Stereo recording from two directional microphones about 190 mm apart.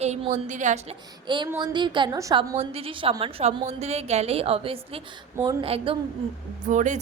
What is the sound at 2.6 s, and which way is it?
A woman's voice, 30° right (ahead or behind).